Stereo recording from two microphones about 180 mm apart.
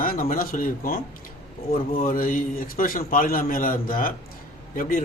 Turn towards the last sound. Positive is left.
turn(degrees=50)  # may be behind; listen again after turning